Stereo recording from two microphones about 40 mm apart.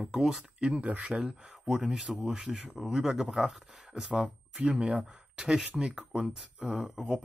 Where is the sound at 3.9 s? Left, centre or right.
Centre.